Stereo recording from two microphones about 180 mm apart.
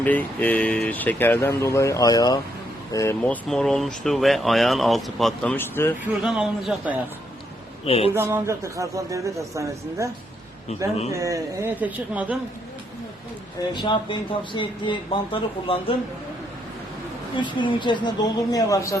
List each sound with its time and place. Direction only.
0.0 s speech: 10° left (ahead or behind)
3.2 s speech: 5° left (ahead or behind)
6.2 s speech: centre (ahead or behind)
7.9 s speech: 35° left (ahead or behind)
8.1 s a man's voice: 15° right (ahead or behind)
11.1 s a man's voice: 15° right (ahead or behind)
13.6 s speech: 25° left (ahead or behind)
17.3 s speech: 25° left (ahead or behind)